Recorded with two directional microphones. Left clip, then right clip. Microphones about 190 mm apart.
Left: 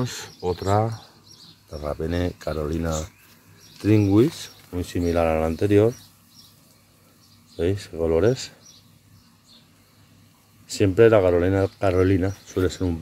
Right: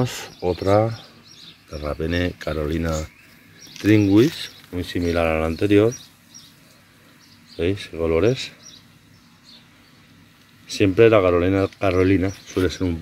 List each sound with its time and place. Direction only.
0.0 s speech: 25° right (ahead or behind)
1.7 s speech: 15° right (ahead or behind)
2.0 s speech: centre (ahead or behind)
7.5 s speech: 10° left (ahead or behind)
10.7 s speech: centre (ahead or behind)